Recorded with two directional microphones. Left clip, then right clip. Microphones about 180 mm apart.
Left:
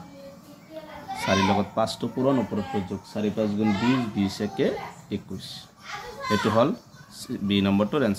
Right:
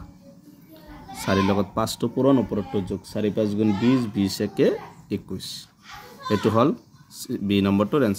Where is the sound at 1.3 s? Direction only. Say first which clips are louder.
Even; 50° right (ahead or behind).